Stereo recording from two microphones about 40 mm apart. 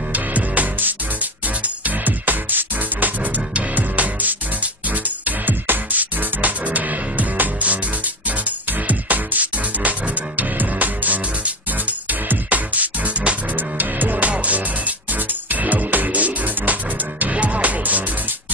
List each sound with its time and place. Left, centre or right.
0.1 s music: right
13.7 s music: right